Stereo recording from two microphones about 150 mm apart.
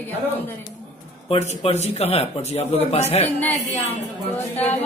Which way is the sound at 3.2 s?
10° left (ahead or behind).